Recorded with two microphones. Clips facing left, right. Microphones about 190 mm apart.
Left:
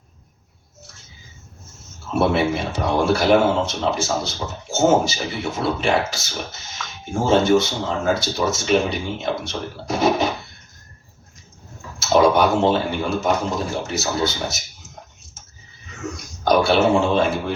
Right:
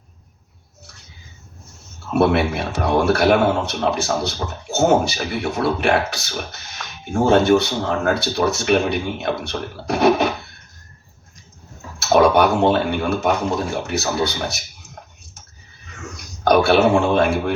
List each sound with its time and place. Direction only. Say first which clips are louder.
2.1 s speech: right 2 dB; 60° right (ahead or behind)
11.9 s a sound: right 1 dB; 60° right (ahead or behind)
12.7 s speech: right 2 dB; 60° right (ahead or behind)
16.4 s speech: right 2 dB; 60° right (ahead or behind)